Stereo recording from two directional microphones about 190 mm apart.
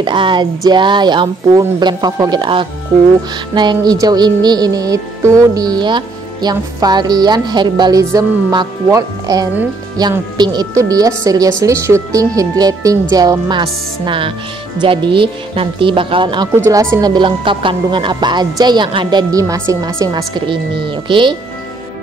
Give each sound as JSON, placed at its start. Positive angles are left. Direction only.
{"t": 0.0, "sound": "music", "side_deg": -25}
{"t": 10.8, "sound": "speech", "side_deg": -20}
{"t": 13.1, "sound": "music", "side_deg": -20}